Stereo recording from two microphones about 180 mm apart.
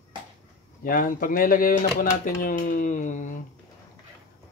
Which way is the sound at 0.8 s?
50° left (ahead or behind).